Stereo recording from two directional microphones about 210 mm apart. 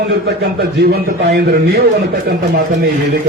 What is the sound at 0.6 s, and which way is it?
Speech, 50° right (ahead or behind).